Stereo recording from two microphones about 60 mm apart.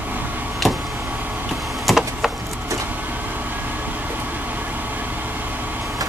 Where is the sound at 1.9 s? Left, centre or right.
Centre.